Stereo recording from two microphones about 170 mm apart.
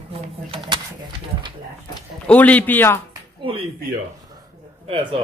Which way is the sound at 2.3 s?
10° left (ahead or behind).